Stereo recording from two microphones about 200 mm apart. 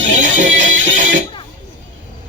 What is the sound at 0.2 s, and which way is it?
Music, 40° right (ahead or behind).